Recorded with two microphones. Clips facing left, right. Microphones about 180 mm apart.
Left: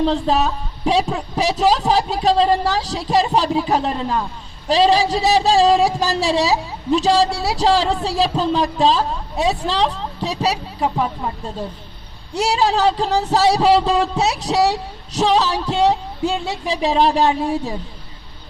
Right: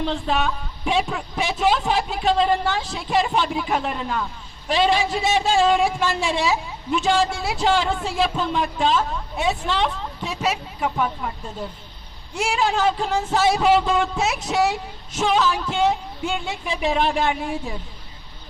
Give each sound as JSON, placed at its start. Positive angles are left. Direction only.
{"t": 0.0, "sound": "a woman's voice", "side_deg": 35}
{"t": 12.3, "sound": "a woman's voice", "side_deg": 35}